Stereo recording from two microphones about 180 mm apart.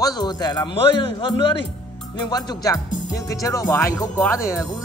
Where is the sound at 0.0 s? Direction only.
20° left (ahead or behind).